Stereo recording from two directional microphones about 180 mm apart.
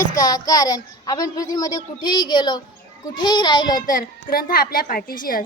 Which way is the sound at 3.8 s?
50° left (ahead or behind).